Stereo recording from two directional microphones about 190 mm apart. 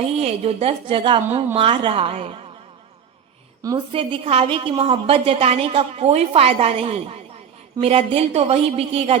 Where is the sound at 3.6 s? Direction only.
25° right (ahead or behind).